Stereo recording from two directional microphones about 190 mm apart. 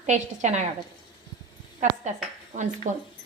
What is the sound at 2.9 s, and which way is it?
Speech, 40° right (ahead or behind).